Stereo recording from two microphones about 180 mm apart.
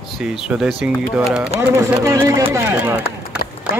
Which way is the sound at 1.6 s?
15° right (ahead or behind).